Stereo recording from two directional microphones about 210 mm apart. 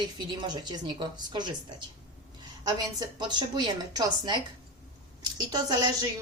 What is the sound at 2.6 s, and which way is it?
A woman's voice, 20° right (ahead or behind).